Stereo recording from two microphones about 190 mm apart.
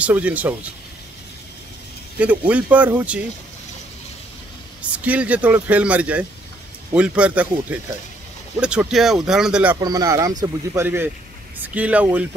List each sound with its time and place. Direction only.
0.0 s speech: 10° right (ahead or behind)
2.1 s speech: 5° right (ahead or behind)
4.9 s speech: 5° right (ahead or behind)
9.8 s speech: 20° right (ahead or behind)